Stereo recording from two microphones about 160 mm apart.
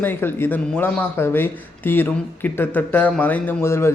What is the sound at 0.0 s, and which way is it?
Speech, 10° left (ahead or behind).